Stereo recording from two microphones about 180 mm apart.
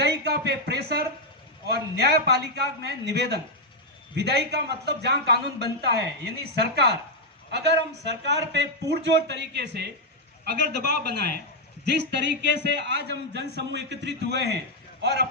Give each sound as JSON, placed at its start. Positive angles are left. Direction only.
{"t": 0.0, "sound": "a man's voice", "side_deg": -65}